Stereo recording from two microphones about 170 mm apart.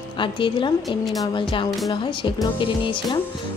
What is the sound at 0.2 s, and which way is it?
Speech, 30° left (ahead or behind).